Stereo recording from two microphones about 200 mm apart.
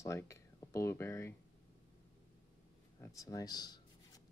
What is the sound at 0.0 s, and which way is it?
Speech, 15° left (ahead or behind).